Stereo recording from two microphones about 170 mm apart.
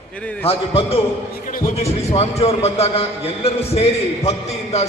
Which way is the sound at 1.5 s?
55° left (ahead or behind).